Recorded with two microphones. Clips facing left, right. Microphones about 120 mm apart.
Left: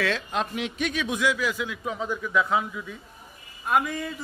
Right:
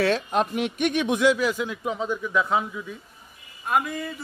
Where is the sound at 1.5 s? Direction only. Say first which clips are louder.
Right 3 dB; 40° right (ahead or behind).